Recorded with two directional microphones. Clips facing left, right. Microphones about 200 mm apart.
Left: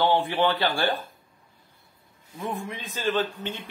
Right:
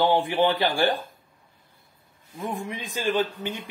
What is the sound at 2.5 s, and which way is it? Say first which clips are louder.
Speech: right 1 dB; 15° right (ahead or behind).